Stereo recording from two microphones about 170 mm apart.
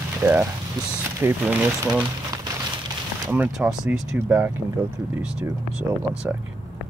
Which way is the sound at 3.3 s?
10° right (ahead or behind).